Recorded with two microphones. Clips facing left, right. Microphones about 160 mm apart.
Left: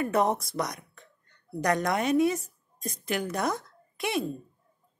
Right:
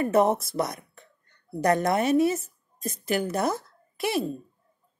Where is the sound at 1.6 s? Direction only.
30° right (ahead or behind).